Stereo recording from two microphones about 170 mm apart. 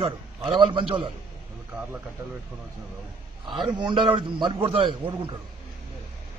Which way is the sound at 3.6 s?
30° right (ahead or behind).